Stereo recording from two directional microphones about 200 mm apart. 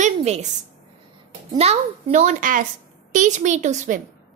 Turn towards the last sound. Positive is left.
turn(degrees=-35)  # may be behind; listen again after turning